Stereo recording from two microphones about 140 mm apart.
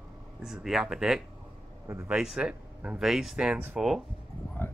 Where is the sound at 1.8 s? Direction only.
20° right (ahead or behind).